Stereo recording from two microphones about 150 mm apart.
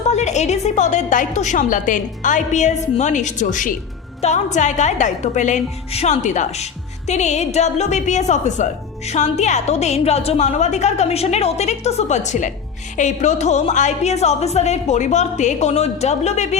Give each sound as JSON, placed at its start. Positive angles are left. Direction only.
{"t": 0.1, "sound": "a woman's voice", "side_deg": 50}